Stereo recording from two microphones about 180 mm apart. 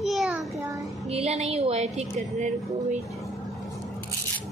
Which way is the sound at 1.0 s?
35° right (ahead or behind).